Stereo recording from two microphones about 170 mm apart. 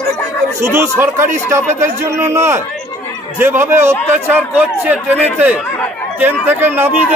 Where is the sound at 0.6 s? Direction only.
15° right (ahead or behind).